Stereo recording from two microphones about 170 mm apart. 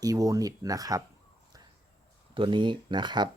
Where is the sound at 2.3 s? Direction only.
30° right (ahead or behind).